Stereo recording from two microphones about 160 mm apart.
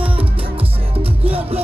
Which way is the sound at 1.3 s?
40° right (ahead or behind).